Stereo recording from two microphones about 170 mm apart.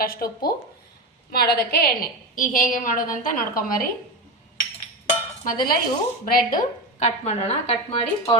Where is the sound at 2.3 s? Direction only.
50° left (ahead or behind).